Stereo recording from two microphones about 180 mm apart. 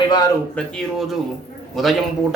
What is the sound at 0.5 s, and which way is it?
A man's voice, centre (ahead or behind).